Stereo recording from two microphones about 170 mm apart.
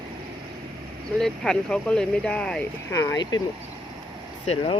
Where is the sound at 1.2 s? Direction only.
5° left (ahead or behind).